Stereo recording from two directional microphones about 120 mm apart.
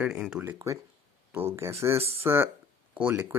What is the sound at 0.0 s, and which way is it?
Speech, 5° right (ahead or behind).